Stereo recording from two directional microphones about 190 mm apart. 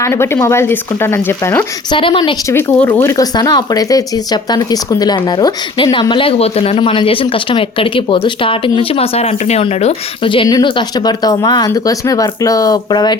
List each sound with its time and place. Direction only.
0.0 s speech: 15° left (ahead or behind)
1.9 s speech: 25° left (ahead or behind)
2.5 s speech: 10° left (ahead or behind)